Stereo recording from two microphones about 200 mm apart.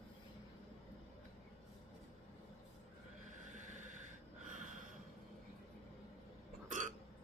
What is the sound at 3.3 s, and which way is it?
Snort, 40° right (ahead or behind).